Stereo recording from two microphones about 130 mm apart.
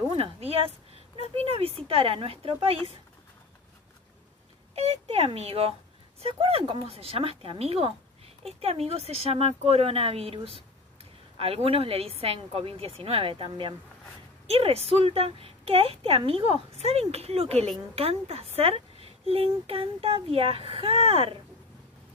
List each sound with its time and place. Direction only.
0.1 s speech: 50° right (ahead or behind)
4.7 s speech: 55° right (ahead or behind)